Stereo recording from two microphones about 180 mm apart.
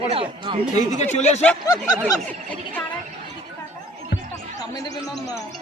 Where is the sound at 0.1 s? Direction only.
30° right (ahead or behind).